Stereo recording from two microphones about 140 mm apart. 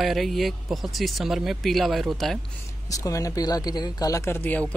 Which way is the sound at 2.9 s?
25° left (ahead or behind).